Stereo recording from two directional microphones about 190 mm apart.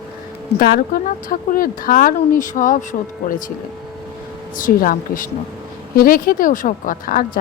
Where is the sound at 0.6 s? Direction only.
50° left (ahead or behind).